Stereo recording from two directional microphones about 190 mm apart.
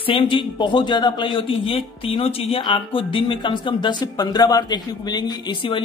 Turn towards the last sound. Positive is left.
turn(degrees=25)  # may be behind; listen again after turning